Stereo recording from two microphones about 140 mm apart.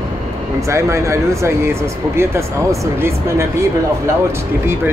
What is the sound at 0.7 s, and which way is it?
Speech, 20° right (ahead or behind).